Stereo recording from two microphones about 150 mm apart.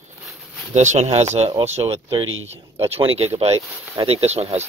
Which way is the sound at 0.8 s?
50° right (ahead or behind).